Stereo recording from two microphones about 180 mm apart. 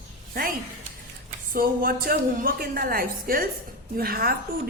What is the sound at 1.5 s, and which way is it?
A woman's voice, 55° right (ahead or behind).